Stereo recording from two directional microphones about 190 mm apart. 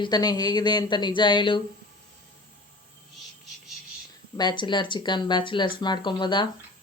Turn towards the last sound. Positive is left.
turn(degrees=25)  # may be behind; listen again after turning